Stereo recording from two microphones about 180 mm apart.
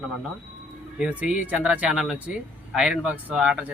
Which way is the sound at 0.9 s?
5° right (ahead or behind).